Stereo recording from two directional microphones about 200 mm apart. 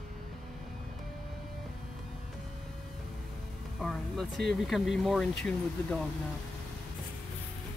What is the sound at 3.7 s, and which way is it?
Speech, centre (ahead or behind).